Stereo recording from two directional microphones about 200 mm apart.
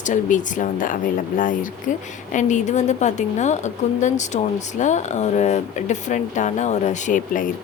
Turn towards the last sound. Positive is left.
turn(degrees=40)  # may be behind; listen again after turning